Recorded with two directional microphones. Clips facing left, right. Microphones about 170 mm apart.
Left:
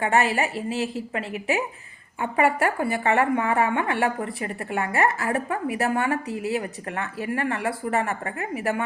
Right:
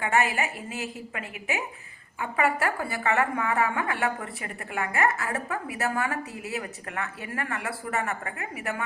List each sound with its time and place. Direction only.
0.0 s a woman's voice: 35° left (ahead or behind)